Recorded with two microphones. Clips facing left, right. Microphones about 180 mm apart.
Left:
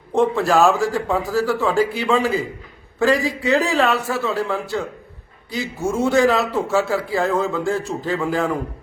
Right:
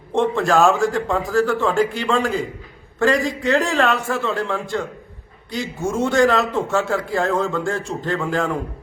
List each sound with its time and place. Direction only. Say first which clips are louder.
0.1 s a man's voice: left 1 dB; 5° left (ahead or behind)